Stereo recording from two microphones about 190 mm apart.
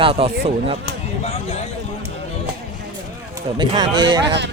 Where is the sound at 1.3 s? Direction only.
35° left (ahead or behind).